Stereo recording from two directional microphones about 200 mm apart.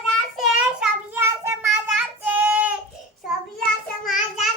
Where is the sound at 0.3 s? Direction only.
5° right (ahead or behind).